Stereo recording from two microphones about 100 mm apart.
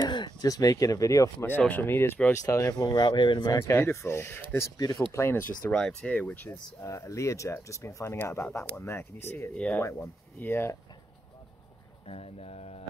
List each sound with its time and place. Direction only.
0.0 s speech: 50° left (ahead or behind); by 1.5 s 35° left (ahead or behind)
1.6 s speech: 15° left (ahead or behind)
2.3 s speech: 35° left (ahead or behind)
2.8 s speech: 45° left (ahead or behind)
3.6 s speech: 25° left (ahead or behind)
4.6 s speech: 35° left (ahead or behind)
5.1 s speech: 25° left (ahead or behind)
5.7 s speech: 10° left (ahead or behind)
6.8 s speech: 30° left (ahead or behind)
9.5 s speech: 10° left (ahead or behind)
9.8 s speech: 25° left (ahead or behind)
12.1 s speech: 80° left